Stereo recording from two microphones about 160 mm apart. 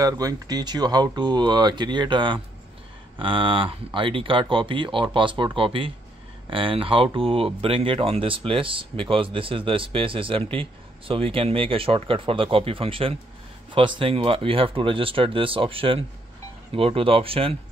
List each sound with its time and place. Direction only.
0.0 s speech: 25° right (ahead or behind)